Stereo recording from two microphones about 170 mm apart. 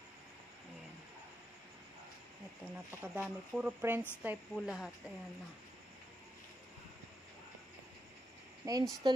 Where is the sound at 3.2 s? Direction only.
5° right (ahead or behind).